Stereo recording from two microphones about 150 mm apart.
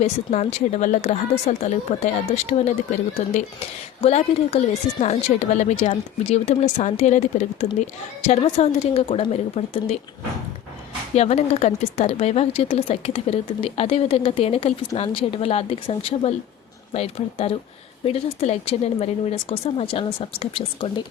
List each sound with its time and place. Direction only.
0.0 s speech: 50° left (ahead or behind)
4.0 s speech: 45° left (ahead or behind)
8.3 s a woman's voice: 40° left (ahead or behind)
11.1 s a woman's voice: 45° left (ahead or behind)